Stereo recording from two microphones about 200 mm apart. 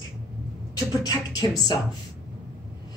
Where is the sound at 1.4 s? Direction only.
20° left (ahead or behind).